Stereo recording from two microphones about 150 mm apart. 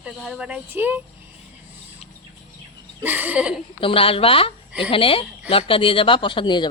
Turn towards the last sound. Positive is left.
turn(degrees=30)  # may be behind; listen again after turning